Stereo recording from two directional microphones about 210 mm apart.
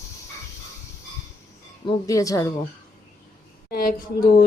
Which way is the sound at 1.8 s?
15° left (ahead or behind).